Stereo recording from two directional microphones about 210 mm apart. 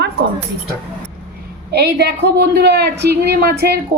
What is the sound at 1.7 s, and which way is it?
A woman's voice, 50° right (ahead or behind).